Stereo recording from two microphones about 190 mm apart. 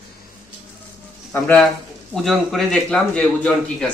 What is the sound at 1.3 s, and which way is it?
A man's voice, 10° left (ahead or behind).